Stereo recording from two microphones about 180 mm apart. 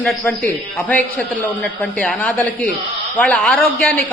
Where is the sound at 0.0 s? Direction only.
Centre (ahead or behind).